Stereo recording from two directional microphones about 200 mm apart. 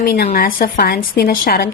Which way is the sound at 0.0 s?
50° left (ahead or behind).